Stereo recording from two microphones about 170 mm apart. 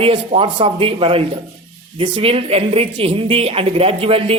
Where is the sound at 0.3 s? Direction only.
35° right (ahead or behind).